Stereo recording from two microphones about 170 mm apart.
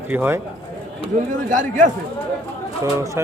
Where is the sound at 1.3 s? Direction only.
50° right (ahead or behind).